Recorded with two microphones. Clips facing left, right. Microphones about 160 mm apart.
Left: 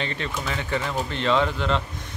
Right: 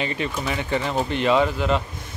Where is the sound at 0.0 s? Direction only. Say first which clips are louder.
Right 3 dB; 10° right (ahead or behind).